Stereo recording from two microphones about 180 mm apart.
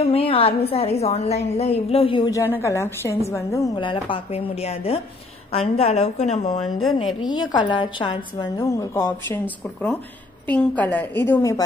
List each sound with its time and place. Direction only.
0.0 s a woman's voice: 30° left (ahead or behind)
2.3 s a woman's voice: 15° left (ahead or behind); by 6.6 s 40° left (ahead or behind)
7.2 s a woman's voice: 25° left (ahead or behind)
8.9 s a woman's voice: 15° left (ahead or behind)